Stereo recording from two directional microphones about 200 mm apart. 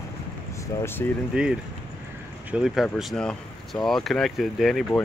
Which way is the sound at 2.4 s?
5° right (ahead or behind).